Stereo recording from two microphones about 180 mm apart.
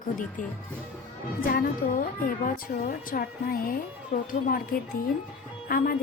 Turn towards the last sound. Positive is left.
turn(degrees=50)  # may be behind; listen again after turning